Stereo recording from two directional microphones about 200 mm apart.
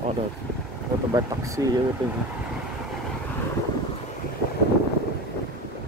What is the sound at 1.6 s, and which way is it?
Speech, 15° right (ahead or behind).